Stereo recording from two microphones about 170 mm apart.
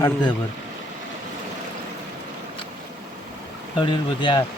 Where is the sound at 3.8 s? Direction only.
30° left (ahead or behind).